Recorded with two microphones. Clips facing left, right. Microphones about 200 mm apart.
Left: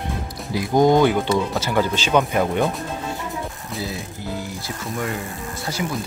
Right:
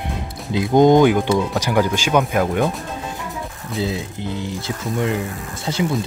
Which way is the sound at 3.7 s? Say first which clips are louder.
Right 7 dB; 20° right (ahead or behind).